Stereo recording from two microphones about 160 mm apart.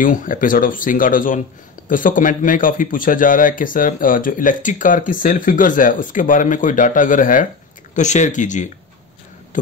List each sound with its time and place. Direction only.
0.0 s a man's voice: 55° left (ahead or behind)